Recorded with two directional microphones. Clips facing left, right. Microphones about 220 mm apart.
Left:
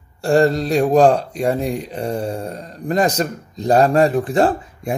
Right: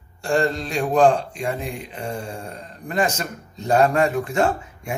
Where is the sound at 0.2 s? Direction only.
40° left (ahead or behind).